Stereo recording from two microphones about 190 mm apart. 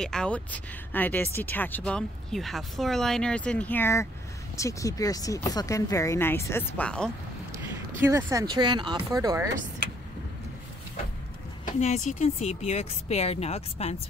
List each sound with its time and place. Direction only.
0.0 s speech: 5° left (ahead or behind)
8.0 s speech: 15° right (ahead or behind)
11.6 s speech: 40° left (ahead or behind)